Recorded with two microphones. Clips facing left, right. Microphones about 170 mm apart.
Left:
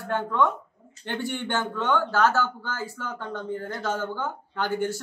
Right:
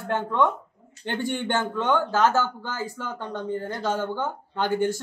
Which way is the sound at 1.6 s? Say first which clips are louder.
Even; 15° right (ahead or behind).